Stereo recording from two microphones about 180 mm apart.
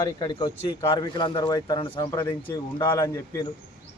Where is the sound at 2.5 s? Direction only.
15° left (ahead or behind).